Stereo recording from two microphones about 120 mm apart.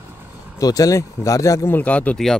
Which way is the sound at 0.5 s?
30° left (ahead or behind).